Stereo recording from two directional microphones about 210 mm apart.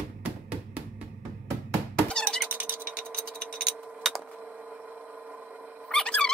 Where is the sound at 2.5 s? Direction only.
10° right (ahead or behind).